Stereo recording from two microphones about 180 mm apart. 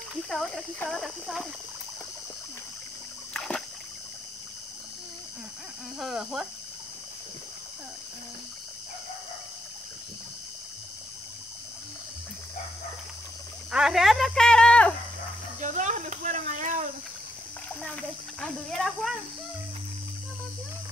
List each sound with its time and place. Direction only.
0.3 s speech: 5° left (ahead or behind)
3.3 s rowboat: 5° left (ahead or behind)
5.9 s speech: centre (ahead or behind)
13.7 s speech: 5° right (ahead or behind)
15.6 s speech: 40° right (ahead or behind)
18.4 s speech: centre (ahead or behind)